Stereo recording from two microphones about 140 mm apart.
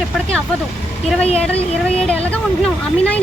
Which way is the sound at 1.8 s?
5° left (ahead or behind).